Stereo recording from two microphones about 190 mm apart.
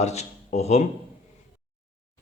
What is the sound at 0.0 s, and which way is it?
Speech, 35° left (ahead or behind).